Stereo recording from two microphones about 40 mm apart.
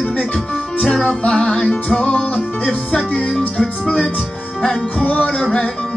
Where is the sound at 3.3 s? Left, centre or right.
Centre.